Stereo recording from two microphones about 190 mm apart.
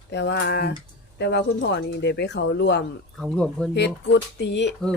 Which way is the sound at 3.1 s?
5° left (ahead or behind).